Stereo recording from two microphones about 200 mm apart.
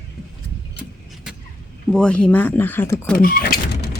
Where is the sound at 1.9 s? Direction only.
5° left (ahead or behind).